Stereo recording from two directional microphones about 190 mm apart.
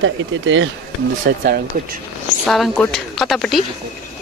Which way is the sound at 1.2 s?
50° right (ahead or behind).